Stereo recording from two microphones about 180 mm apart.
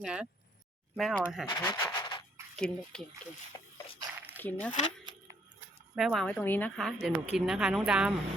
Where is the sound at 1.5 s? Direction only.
25° left (ahead or behind).